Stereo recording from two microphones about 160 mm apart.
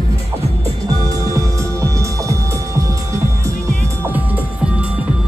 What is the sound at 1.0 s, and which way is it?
Music, 20° right (ahead or behind).